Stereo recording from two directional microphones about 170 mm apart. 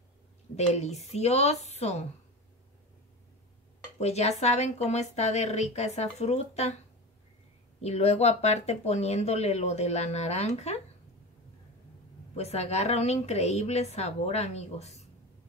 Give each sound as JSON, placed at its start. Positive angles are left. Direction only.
{"t": 0.6, "sound": "speech", "side_deg": 40}
{"t": 4.0, "sound": "speech", "side_deg": 40}
{"t": 7.8, "sound": "speech", "side_deg": 40}
{"t": 12.4, "sound": "speech", "side_deg": 40}